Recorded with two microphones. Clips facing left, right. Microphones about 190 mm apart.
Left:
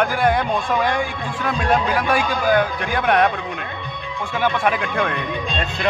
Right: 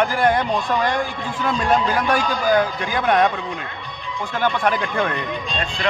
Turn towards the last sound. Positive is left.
turn(degrees=0)  # may be behind; listen again after turning